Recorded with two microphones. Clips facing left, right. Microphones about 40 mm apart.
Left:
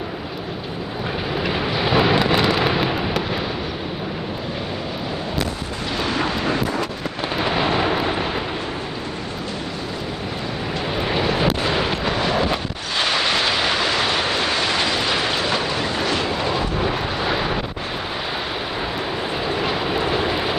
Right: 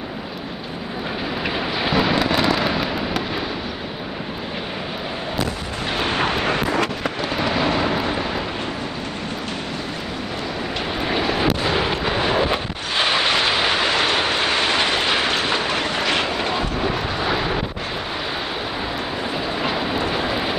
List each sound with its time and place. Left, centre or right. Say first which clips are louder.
1.4 s thunder: left 1 dB; centre
5.9 s vehicle: right 1 dB; right
7.2 s thunder: left 1 dB; centre
11.0 s vehicle: left 1 dB; centre
15.7 s vehicle: right 1 dB; right
16.8 s vehicle: even; centre
19.3 s vehicle: left 1 dB; centre